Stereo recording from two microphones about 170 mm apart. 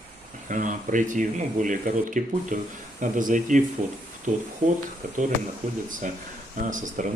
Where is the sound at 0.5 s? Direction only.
50° right (ahead or behind).